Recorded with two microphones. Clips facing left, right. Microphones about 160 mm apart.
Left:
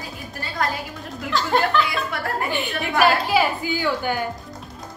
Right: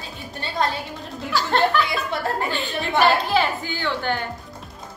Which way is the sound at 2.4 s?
15° left (ahead or behind).